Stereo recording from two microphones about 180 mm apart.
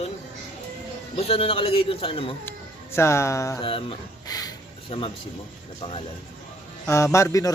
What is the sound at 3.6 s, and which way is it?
Speech, 30° left (ahead or behind).